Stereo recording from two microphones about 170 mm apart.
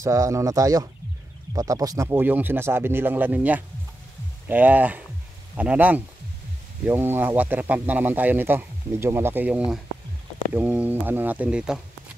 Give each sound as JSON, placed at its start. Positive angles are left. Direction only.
{"t": 0.0, "sound": "speech", "side_deg": -20}